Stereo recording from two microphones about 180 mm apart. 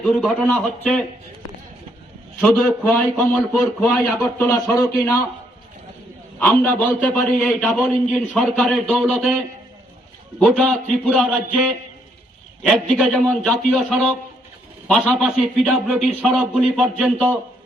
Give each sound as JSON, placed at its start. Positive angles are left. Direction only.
{"t": 0.0, "sound": "a man's voice", "side_deg": 0}
{"t": 2.4, "sound": "a man's voice", "side_deg": 5}
{"t": 6.4, "sound": "a man's voice", "side_deg": 10}
{"t": 10.4, "sound": "a man's voice", "side_deg": 0}
{"t": 12.6, "sound": "a man's voice", "side_deg": 0}